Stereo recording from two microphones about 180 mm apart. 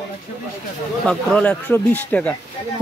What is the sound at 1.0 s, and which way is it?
Speech, 5° left (ahead or behind).